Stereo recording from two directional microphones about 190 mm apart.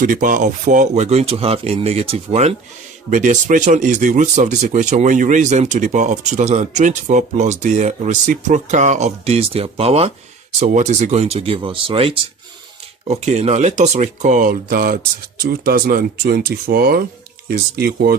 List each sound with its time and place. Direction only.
0.0 s speech: 45° right (ahead or behind)